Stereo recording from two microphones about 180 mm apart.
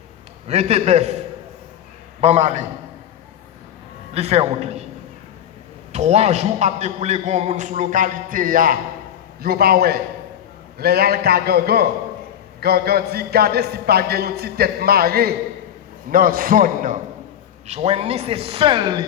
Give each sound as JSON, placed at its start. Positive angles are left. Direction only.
{"t": 0.4, "sound": "a man's voice", "side_deg": -35}
{"t": 2.2, "sound": "a man's voice", "side_deg": -40}
{"t": 4.1, "sound": "a man's voice", "side_deg": -35}
{"t": 5.9, "sound": "a man's voice", "side_deg": -40}
{"t": 17.7, "sound": "a man's voice", "side_deg": -35}